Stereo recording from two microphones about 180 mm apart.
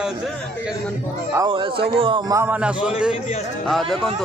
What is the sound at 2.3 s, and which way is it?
A man's voice, 10° right (ahead or behind).